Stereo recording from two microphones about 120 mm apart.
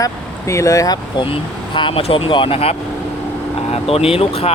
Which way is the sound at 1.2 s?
45° left (ahead or behind).